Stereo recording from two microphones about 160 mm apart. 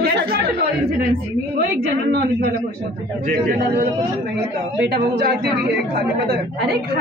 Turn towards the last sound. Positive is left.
turn(degrees=-90)